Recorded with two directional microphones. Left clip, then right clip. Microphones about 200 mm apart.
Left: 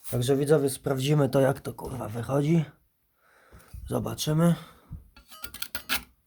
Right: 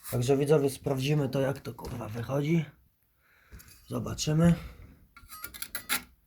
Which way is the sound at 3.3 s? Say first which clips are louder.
Left 1 dB; 25° left (ahead or behind).